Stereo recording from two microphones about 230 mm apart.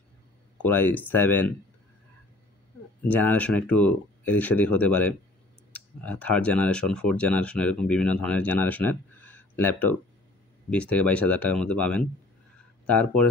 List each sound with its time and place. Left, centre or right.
0.6 s speech: centre
3.1 s speech: centre